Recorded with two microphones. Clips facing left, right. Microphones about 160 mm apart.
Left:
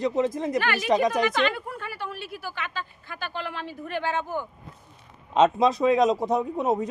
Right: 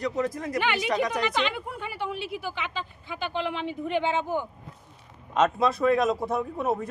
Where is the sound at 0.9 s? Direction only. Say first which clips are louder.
Left 8 dB; 20° left (ahead or behind).